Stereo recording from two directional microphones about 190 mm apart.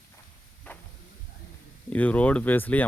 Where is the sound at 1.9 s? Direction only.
5° left (ahead or behind).